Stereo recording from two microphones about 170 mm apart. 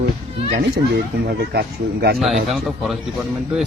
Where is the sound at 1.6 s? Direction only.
65° right (ahead or behind).